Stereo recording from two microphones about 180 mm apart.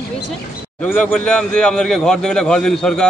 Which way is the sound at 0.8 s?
10° left (ahead or behind).